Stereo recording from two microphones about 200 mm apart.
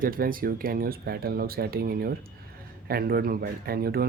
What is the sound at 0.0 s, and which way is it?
Speech, 45° right (ahead or behind).